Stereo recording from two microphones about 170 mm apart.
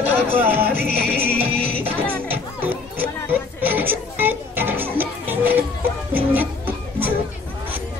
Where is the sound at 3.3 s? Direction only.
10° right (ahead or behind).